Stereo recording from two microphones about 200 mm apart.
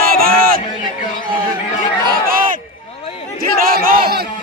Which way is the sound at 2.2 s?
40° right (ahead or behind).